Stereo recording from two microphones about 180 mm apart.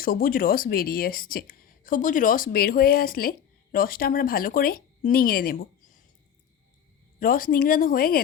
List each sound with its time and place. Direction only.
0.0 s speech: 55° left (ahead or behind)
7.2 s speech: 50° left (ahead or behind)